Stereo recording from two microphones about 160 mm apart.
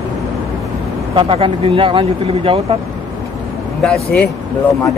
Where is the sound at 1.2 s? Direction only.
35° right (ahead or behind).